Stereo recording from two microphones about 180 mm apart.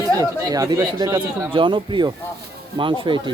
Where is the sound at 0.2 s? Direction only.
20° right (ahead or behind).